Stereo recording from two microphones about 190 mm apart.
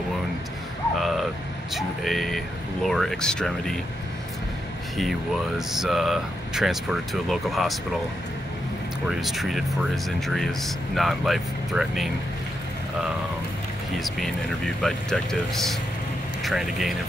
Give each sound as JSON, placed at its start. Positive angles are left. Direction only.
{"t": 1.7, "sound": "speech", "side_deg": 0}
{"t": 5.7, "sound": "speech", "side_deg": 0}
{"t": 9.1, "sound": "speech", "side_deg": 0}
{"t": 13.9, "sound": "speech", "side_deg": 0}